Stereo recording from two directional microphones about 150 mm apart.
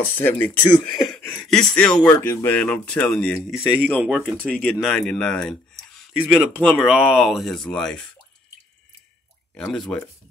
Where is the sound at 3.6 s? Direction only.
10° right (ahead or behind).